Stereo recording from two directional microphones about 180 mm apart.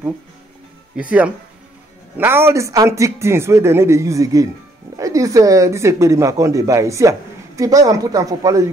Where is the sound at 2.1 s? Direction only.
10° right (ahead or behind).